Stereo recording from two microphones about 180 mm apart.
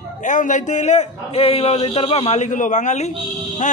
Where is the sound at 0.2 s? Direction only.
45° left (ahead or behind).